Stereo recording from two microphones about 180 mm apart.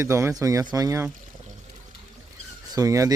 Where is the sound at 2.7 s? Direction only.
20° right (ahead or behind).